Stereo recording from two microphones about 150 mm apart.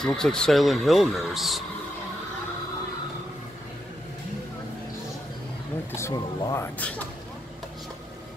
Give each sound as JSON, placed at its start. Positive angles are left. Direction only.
{"t": 0.0, "sound": "speech", "side_deg": 5}
{"t": 5.9, "sound": "speech", "side_deg": 20}